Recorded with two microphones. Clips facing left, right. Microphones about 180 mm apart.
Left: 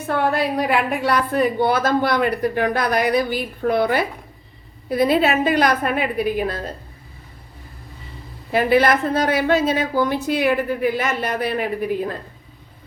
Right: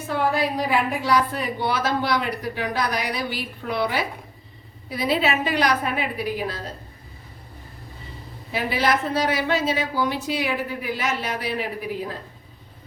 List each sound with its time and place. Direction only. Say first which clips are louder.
0.1 s a woman's voice: left 3 dB; 60° left (ahead or behind)
8.5 s a woman's voice: left 7 dB; 55° left (ahead or behind)